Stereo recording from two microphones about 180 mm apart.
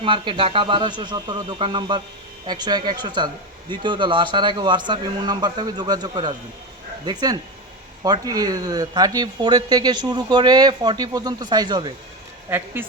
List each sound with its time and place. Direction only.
0.0 s speech: 30° right (ahead or behind)
12.5 s speech: 10° right (ahead or behind)